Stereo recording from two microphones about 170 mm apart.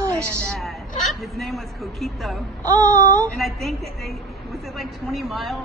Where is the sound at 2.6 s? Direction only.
15° right (ahead or behind).